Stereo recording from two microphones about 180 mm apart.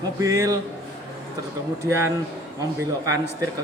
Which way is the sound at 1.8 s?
15° right (ahead or behind).